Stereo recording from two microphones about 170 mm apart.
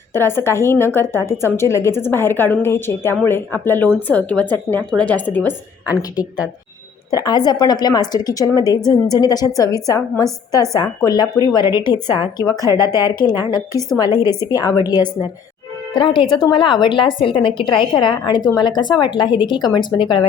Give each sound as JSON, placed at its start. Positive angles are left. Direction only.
{"t": 0.1, "sound": "a woman's voice", "side_deg": 15}
{"t": 5.9, "sound": "a woman's voice", "side_deg": 20}
{"t": 14.2, "sound": "a woman's voice", "side_deg": -15}
{"t": 14.5, "sound": "a woman's voice", "side_deg": 20}